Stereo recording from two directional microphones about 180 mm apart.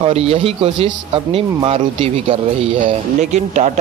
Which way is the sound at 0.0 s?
35° right (ahead or behind).